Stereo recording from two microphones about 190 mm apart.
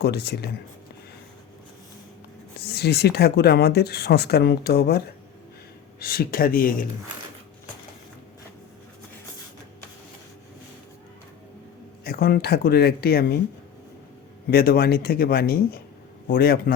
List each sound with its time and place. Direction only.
0.0 s speech: 60° left (ahead or behind)
2.6 s speech: 60° left (ahead or behind)
12.0 s speech: 55° left (ahead or behind)
14.5 s speech: 55° left (ahead or behind)